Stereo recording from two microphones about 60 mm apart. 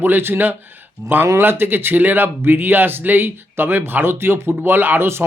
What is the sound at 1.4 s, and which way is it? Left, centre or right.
Speech, right.